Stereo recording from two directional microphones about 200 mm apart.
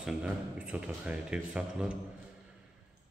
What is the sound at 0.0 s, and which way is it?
A man's voice, 5° right (ahead or behind).